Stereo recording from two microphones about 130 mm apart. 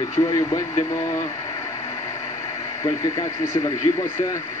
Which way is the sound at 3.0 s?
25° left (ahead or behind).